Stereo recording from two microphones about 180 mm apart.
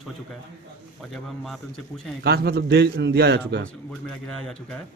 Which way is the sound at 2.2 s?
65° right (ahead or behind).